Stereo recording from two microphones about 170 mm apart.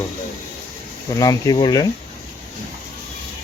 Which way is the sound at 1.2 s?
20° left (ahead or behind).